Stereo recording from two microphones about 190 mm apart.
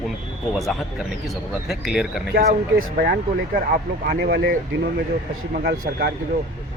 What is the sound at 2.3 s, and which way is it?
Speech, 55° right (ahead or behind).